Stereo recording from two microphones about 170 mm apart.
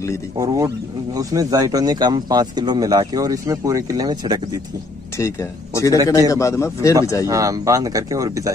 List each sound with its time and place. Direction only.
0.4 s speech: 20° right (ahead or behind)
5.1 s a man's voice: 15° left (ahead or behind)
7.2 s speech: 20° right (ahead or behind)